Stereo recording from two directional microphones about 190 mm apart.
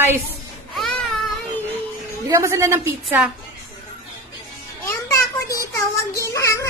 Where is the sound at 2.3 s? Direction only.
15° right (ahead or behind).